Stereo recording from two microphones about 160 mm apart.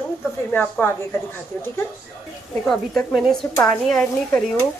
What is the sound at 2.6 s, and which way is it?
Speech, 5° left (ahead or behind).